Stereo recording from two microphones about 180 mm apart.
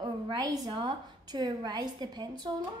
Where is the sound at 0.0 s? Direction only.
25° right (ahead or behind).